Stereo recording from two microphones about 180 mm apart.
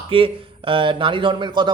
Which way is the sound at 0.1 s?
30° right (ahead or behind).